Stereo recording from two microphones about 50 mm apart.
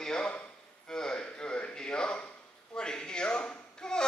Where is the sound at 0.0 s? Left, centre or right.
Centre.